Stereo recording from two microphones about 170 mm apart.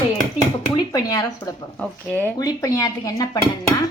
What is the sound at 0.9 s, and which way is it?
Speech, 20° left (ahead or behind).